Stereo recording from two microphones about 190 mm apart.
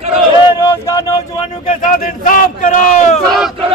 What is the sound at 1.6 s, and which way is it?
Speech, 40° left (ahead or behind).